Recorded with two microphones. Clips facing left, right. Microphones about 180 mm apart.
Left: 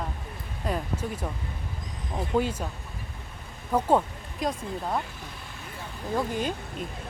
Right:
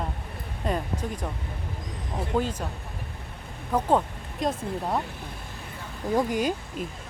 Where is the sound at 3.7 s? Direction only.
10° left (ahead or behind).